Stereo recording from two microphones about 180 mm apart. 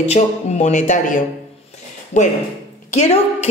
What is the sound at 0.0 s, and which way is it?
A woman's voice, 35° left (ahead or behind).